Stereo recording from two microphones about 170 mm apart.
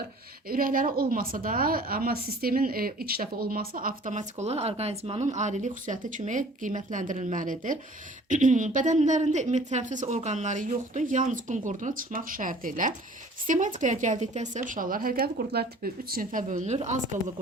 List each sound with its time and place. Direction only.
0.4 s a woman's voice: 55° right (ahead or behind)